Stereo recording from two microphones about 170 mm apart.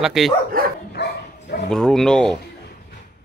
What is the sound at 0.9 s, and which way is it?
Bow-wow, 70° left (ahead or behind).